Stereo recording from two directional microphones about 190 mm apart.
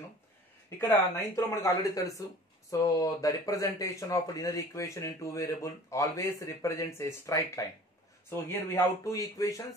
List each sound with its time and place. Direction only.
0.7 s speech: 15° left (ahead or behind)